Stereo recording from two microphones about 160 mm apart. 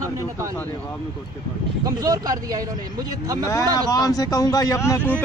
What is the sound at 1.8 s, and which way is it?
Speech, 25° right (ahead or behind).